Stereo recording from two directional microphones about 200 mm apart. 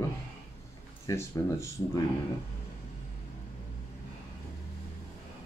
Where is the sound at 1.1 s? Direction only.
15° left (ahead or behind).